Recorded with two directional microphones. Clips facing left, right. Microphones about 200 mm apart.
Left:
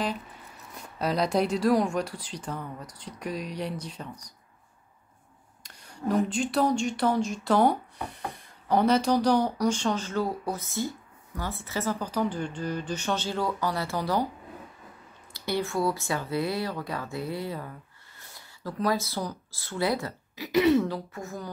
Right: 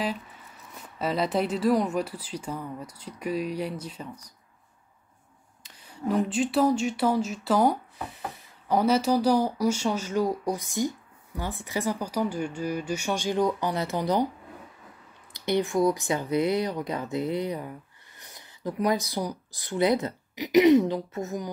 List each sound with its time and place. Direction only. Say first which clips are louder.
0.9 s speech: left 1 dB; 5° right (ahead or behind)
5.6 s speech: right 1 dB; 5° right (ahead or behind)
15.3 s speech: right 4 dB; 20° right (ahead or behind)